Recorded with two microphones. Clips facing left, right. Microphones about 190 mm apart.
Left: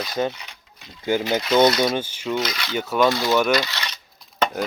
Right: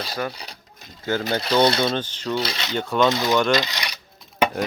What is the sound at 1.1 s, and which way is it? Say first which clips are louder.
Speech: left 2 dB; 15° left (ahead or behind).